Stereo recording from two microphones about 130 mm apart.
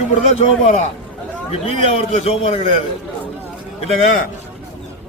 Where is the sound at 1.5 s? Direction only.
50° left (ahead or behind).